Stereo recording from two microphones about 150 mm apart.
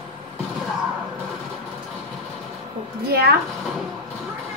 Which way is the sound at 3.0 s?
90° right.